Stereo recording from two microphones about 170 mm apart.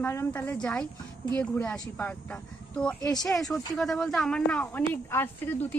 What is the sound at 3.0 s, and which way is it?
Speech, 20° left (ahead or behind).